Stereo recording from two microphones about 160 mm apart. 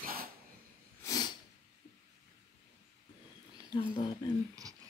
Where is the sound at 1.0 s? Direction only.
25° left (ahead or behind).